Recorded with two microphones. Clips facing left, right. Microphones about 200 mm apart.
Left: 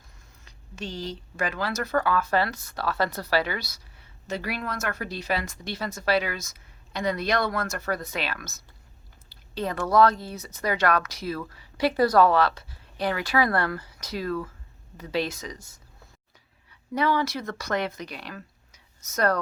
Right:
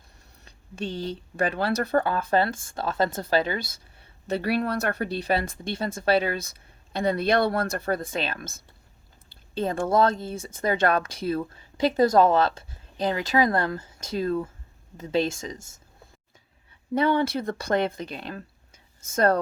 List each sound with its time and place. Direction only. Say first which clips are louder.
1.1 s speech: right 4 dB; 30° right (ahead or behind)
9.6 s speech: left 1 dB; 25° right (ahead or behind)
16.9 s speech: right 3 dB; 25° right (ahead or behind)